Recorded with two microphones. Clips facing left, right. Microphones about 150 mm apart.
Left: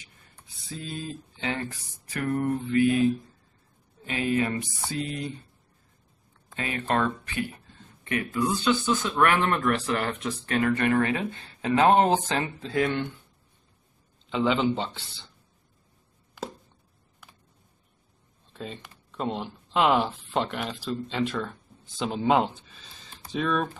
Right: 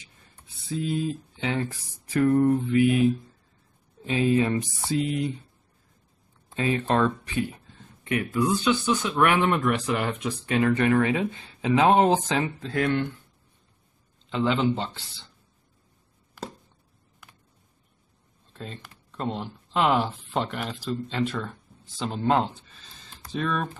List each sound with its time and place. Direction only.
0.7 s speech: 15° right (ahead or behind)
2.2 s mantra: 25° right (ahead or behind)
4.9 s speech: 15° right (ahead or behind)
6.5 s speech: 25° right (ahead or behind)
8.2 s speech: 5° right (ahead or behind)
12.6 s speech: centre (ahead or behind)
14.3 s speech: centre (ahead or behind)
18.5 s speech: 5° left (ahead or behind)
22.7 s a sound: 5° left (ahead or behind)
23.2 s speech: 5° left (ahead or behind)